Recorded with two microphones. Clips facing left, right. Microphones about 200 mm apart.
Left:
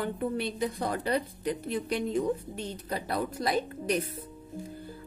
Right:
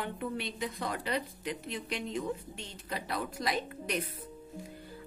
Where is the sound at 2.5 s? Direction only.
50° left (ahead or behind).